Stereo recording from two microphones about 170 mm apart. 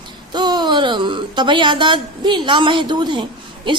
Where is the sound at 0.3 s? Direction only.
25° right (ahead or behind).